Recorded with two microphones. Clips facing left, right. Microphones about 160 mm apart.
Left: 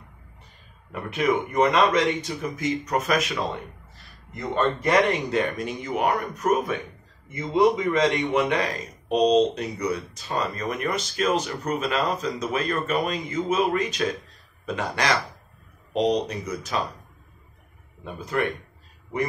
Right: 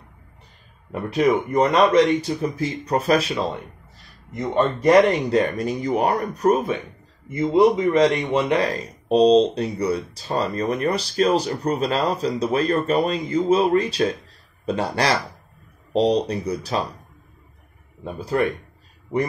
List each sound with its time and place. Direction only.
1.1 s speech: 35° right (ahead or behind)
4.3 s a man's voice: 20° right (ahead or behind)
4.7 s a man's voice: 35° right (ahead or behind)
18.0 s speech: 35° right (ahead or behind)